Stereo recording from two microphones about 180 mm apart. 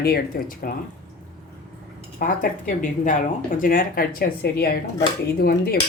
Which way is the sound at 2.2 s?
50° left (ahead or behind).